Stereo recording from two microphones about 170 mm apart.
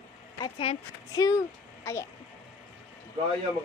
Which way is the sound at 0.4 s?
35° left (ahead or behind).